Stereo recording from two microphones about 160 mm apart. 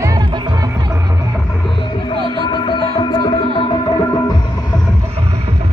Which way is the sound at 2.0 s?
30° left (ahead or behind).